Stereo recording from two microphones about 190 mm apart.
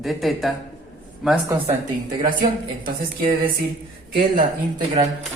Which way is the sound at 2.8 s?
50° right (ahead or behind).